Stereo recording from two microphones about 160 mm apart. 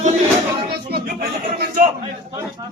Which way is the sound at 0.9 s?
70° right (ahead or behind).